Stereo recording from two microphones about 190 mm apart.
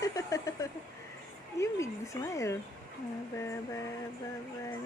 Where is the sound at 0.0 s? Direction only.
15° left (ahead or behind).